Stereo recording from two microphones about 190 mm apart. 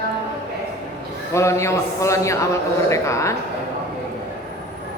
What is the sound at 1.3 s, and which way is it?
A man's voice, 15° left (ahead or behind).